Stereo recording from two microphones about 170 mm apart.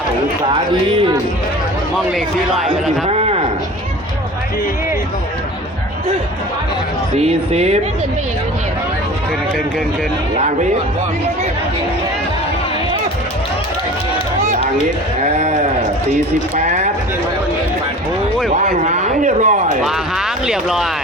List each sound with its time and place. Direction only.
0.7 s speech: 30° right (ahead or behind)
2.1 s speech: centre (ahead or behind)
3.1 s a sound: 35° right (ahead or behind)
7.2 s speech: 40° right (ahead or behind)
15.2 s a sound: 45° right (ahead or behind)
16.1 s speech: 45° right (ahead or behind)
18.9 s a man's voice: 45° right (ahead or behind)
19.8 s speech: 5° right (ahead or behind)